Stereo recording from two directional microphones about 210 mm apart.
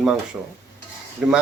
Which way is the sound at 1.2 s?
5° right (ahead or behind).